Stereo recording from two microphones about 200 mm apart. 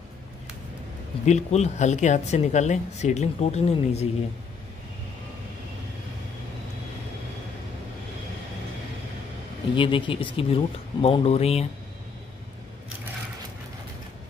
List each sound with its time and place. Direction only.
1.2 s speech: 35° left (ahead or behind)
9.8 s speech: 25° left (ahead or behind)